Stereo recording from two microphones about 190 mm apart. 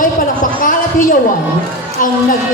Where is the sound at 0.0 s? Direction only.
45° left (ahead or behind).